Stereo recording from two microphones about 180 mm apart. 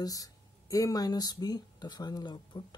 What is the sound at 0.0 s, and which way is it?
Speech, 20° left (ahead or behind).